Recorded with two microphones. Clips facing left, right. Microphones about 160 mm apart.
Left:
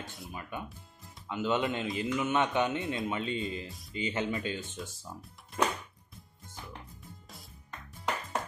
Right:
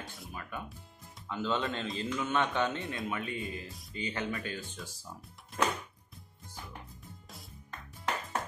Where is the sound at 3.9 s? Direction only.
20° left (ahead or behind).